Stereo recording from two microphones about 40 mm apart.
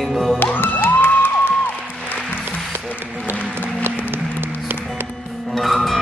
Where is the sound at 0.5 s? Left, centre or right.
Left.